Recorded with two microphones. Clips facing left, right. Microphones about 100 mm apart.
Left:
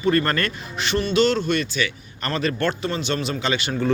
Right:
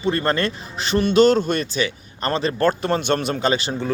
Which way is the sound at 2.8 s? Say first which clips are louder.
Right 4 dB; 50° right (ahead or behind).